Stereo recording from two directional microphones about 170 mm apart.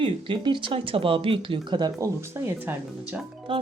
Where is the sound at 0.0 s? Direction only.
30° right (ahead or behind).